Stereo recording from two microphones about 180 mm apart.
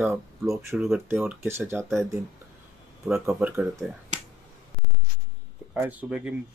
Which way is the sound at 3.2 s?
10° right (ahead or behind).